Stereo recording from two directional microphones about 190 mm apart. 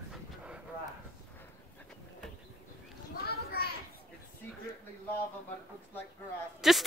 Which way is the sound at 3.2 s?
55° left (ahead or behind).